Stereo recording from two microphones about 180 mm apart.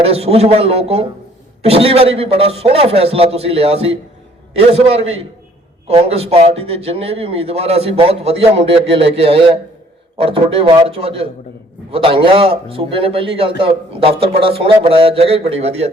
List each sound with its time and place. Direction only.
0.0 s a man's voice: 35° right (ahead or behind)